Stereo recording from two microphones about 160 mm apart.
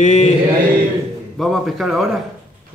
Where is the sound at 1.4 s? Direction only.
Centre (ahead or behind).